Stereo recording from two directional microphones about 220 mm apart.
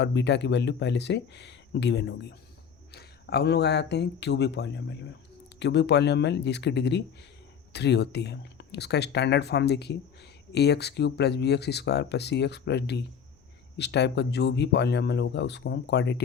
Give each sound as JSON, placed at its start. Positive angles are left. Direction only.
{"t": 0.0, "sound": "speech", "side_deg": 50}